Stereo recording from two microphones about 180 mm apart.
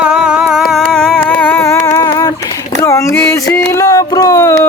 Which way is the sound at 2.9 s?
15° left (ahead or behind).